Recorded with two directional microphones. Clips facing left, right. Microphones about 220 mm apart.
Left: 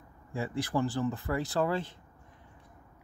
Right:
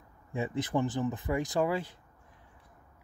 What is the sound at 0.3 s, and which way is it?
Speech, 20° right (ahead or behind).